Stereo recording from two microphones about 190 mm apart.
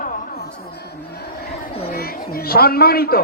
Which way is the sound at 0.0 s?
50° left (ahead or behind).